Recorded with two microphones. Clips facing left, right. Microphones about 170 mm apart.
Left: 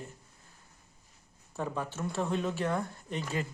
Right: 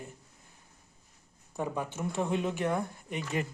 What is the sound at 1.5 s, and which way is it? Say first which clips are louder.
Speech: right 1 dB; 15° right (ahead or behind).